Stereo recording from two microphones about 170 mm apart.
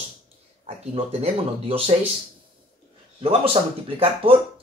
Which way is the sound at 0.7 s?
35° right (ahead or behind).